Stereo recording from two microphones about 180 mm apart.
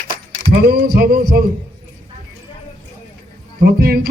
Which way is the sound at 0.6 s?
60° right (ahead or behind).